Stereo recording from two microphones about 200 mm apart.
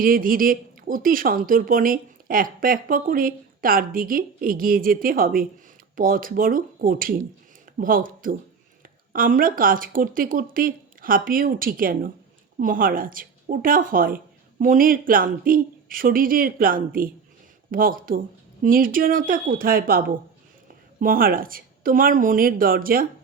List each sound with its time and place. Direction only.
0.0 s speech: 45° right (ahead or behind)